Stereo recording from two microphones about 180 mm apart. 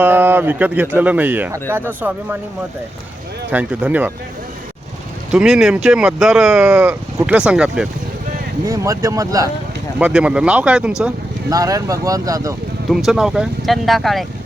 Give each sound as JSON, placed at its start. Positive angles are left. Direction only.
{"t": 0.0, "sound": "speech", "side_deg": -10}
{"t": 3.5, "sound": "speech", "side_deg": -5}
{"t": 5.3, "sound": "speech", "side_deg": -5}
{"t": 8.6, "sound": "speech", "side_deg": -15}
{"t": 10.0, "sound": "speech", "side_deg": -5}
{"t": 11.4, "sound": "speech", "side_deg": -20}
{"t": 12.9, "sound": "speech", "side_deg": 0}